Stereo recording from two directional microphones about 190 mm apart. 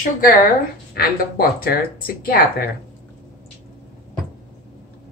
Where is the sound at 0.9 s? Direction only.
50° left (ahead or behind).